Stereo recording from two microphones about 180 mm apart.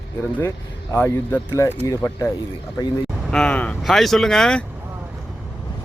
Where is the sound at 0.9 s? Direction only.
15° left (ahead or behind).